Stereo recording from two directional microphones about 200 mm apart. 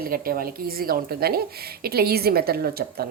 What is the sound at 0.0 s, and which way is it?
A woman's voice, 45° right (ahead or behind).